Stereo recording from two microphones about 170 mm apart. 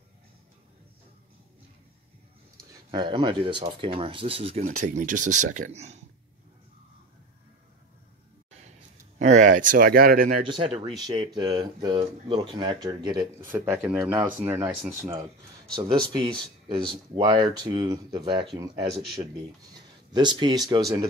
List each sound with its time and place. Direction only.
2.9 s speech: 30° right (ahead or behind)
4.6 s speech: 45° right (ahead or behind)
9.2 s speech: 45° right (ahead or behind); by 10.3 s 60° right (ahead or behind)
10.3 s speech: 30° right (ahead or behind)
13.4 s speech: 10° right (ahead or behind)
16.2 s speech: 30° right (ahead or behind)
20.1 s speech: 25° right (ahead or behind)